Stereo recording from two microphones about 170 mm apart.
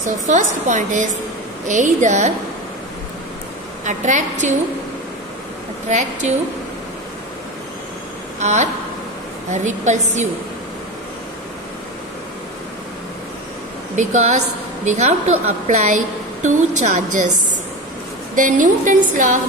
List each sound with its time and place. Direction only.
0.3 s a woman's voice: 45° right (ahead or behind)
3.8 s a woman's voice: 45° right (ahead or behind)
5.9 s a woman's voice: 45° right (ahead or behind)
8.4 s a woman's voice: 45° right (ahead or behind)
13.9 s a woman's voice: 45° right (ahead or behind)
18.3 s a woman's voice: 50° right (ahead or behind)